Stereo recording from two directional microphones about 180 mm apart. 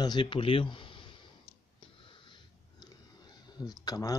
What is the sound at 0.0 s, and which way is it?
Speech, 25° left (ahead or behind).